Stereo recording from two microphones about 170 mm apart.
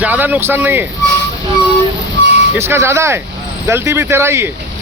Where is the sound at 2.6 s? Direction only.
15° right (ahead or behind).